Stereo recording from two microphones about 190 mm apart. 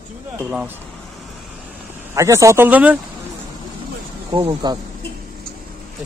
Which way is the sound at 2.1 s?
15° right (ahead or behind).